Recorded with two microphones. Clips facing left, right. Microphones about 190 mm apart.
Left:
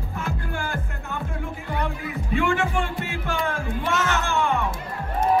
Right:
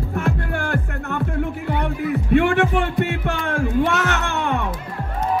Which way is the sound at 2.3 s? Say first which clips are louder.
Right 6 dB; 65° right (ahead or behind).